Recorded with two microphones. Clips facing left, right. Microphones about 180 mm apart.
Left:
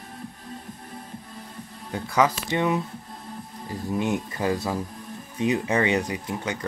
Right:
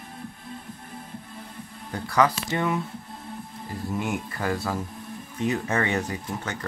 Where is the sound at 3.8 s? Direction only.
20° left (ahead or behind).